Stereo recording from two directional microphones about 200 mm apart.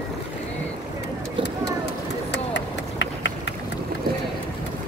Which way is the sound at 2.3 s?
60° left (ahead or behind).